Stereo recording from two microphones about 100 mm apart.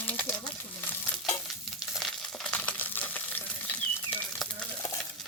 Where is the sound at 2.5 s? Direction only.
15° left (ahead or behind).